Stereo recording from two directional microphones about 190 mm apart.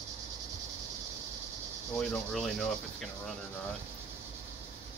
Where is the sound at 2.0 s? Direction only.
Centre (ahead or behind).